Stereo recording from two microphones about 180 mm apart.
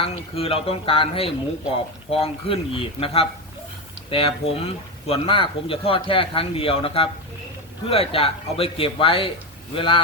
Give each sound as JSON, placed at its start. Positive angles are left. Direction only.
{"t": 0.0, "sound": "speech", "side_deg": 30}